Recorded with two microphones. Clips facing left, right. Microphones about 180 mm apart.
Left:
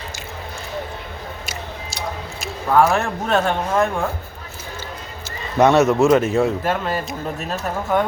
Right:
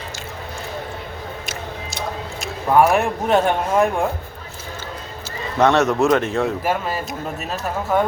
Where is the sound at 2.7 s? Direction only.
15° right (ahead or behind).